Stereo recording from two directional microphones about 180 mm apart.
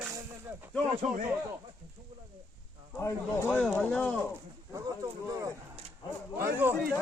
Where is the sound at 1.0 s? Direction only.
40° right (ahead or behind).